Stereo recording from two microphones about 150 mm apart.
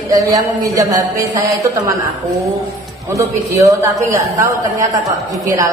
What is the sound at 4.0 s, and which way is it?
Speech, 20° right (ahead or behind).